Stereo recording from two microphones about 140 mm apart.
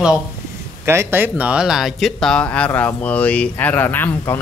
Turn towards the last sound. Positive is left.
turn(degrees=15)  # may be behind; listen again after turning